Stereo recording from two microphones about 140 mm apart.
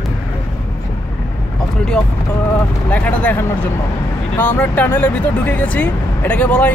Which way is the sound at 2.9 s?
10° left (ahead or behind).